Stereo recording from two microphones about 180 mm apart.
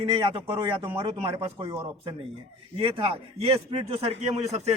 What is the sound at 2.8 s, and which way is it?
A man's voice, 30° right (ahead or behind).